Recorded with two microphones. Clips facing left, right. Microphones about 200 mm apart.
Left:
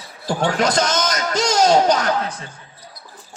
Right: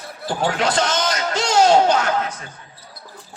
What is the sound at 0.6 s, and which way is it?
A man's voice, 40° left (ahead or behind).